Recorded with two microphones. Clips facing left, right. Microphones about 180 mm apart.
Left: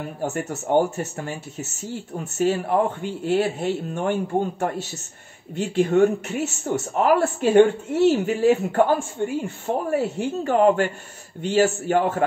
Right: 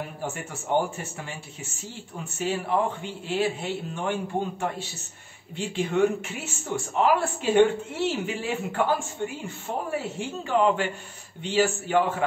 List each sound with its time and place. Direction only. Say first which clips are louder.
0.2 s speech: left 7 dB; 40° left (ahead or behind)